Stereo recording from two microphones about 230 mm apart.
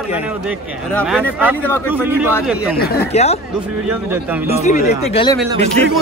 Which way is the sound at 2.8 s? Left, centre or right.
Left.